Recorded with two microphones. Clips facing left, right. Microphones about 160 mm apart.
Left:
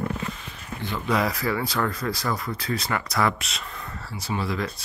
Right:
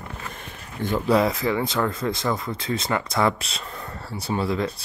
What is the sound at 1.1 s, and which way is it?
Speech, 25° right (ahead or behind).